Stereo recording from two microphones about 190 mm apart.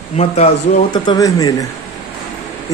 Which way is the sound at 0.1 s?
35° left (ahead or behind).